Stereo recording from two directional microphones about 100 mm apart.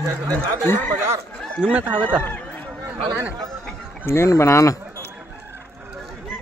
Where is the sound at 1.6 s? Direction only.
15° right (ahead or behind).